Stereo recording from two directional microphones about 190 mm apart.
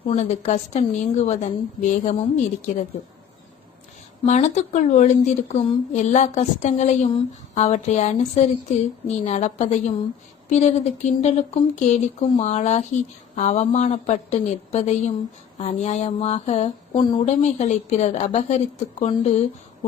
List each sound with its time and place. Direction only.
0.0 s a woman's voice: 35° left (ahead or behind)
4.3 s a woman's voice: 35° left (ahead or behind)